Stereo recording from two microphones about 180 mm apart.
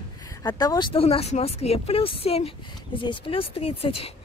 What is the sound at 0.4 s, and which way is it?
Speech, 20° left (ahead or behind).